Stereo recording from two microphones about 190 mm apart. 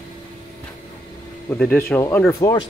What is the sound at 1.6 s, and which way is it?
Speech, 10° left (ahead or behind).